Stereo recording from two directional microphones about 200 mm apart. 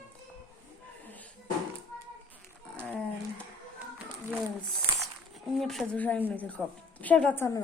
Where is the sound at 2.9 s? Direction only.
5° right (ahead or behind).